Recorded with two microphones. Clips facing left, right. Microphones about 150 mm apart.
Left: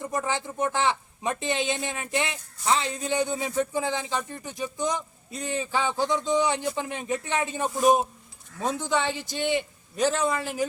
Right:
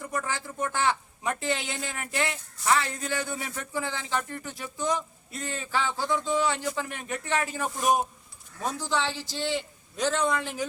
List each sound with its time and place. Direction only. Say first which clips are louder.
0.0 s speech: left 4 dB; 20° left (ahead or behind)